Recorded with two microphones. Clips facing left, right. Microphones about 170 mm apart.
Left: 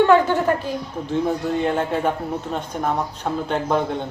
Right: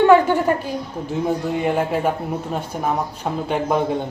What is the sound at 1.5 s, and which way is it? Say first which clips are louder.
A man's voice: right 1 dB; 10° right (ahead or behind).